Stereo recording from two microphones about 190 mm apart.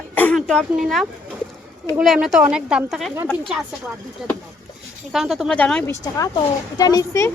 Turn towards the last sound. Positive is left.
turn(degrees=15)  # may be behind; listen again after turning